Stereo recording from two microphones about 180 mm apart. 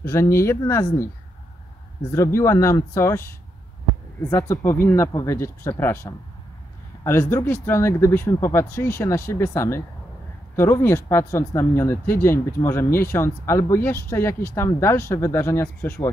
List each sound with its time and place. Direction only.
0.0 s speech: 15° left (ahead or behind)
2.1 s speech: 15° left (ahead or behind)
4.3 s speech: 15° left (ahead or behind)